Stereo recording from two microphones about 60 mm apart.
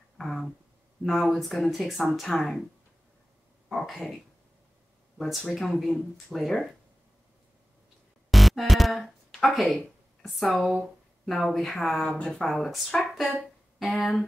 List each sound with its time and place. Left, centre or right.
0.2 s a sound: centre
1.0 s speech: centre
3.6 s speech: centre
5.4 s speech: centre
8.3 s music: centre
9.3 s speech: centre